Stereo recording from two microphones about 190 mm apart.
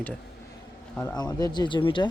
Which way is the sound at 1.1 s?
20° left (ahead or behind).